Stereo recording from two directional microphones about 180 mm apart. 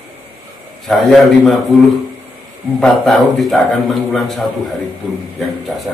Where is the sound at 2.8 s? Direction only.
Centre (ahead or behind).